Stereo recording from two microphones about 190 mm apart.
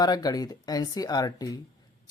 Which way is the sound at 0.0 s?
20° left (ahead or behind).